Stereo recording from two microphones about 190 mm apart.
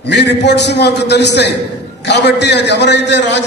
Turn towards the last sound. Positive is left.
turn(degrees=70)  # may be behind; listen again after turning